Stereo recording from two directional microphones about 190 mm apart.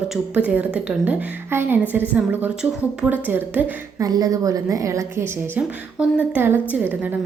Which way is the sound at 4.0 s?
20° right (ahead or behind).